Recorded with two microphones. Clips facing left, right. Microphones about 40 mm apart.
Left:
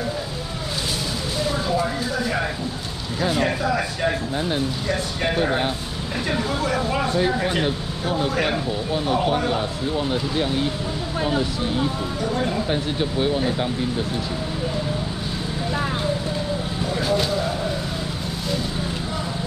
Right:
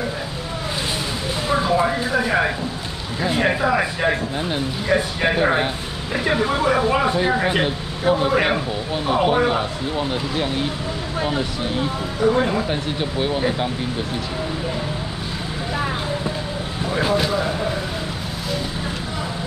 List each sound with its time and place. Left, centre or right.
1.5 s a sound: right
3.2 s speech: right
12.3 s speech: right
12.6 s speech: centre
16.9 s vehicle: right